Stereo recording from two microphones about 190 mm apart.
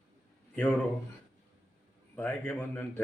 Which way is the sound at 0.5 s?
10° left (ahead or behind).